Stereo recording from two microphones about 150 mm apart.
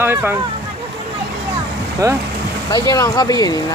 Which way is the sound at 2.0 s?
20° right (ahead or behind).